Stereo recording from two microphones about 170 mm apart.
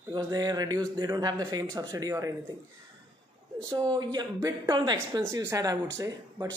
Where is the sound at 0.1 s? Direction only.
25° right (ahead or behind).